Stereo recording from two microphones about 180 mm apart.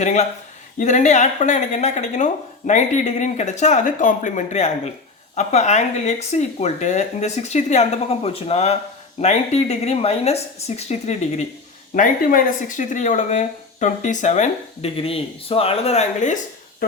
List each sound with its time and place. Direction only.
0.0 s speech: 40° left (ahead or behind)